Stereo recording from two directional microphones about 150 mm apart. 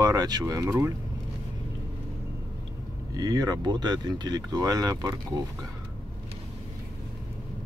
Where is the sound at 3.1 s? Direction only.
25° right (ahead or behind).